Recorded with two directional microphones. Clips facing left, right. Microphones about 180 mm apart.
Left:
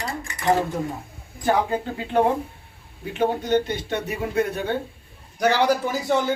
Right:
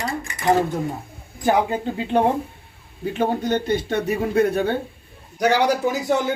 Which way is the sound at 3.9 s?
35° right (ahead or behind).